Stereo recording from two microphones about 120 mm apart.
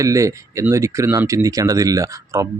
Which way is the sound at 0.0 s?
25° right (ahead or behind).